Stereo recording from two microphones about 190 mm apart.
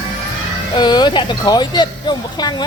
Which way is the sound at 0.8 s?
25° left (ahead or behind).